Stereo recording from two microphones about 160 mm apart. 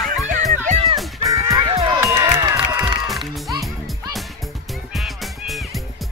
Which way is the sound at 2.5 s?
5° right (ahead or behind).